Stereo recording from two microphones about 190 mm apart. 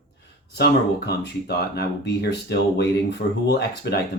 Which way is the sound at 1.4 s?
55° left (ahead or behind).